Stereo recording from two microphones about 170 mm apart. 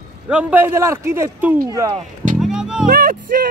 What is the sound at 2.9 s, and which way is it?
Speech, 60° right (ahead or behind).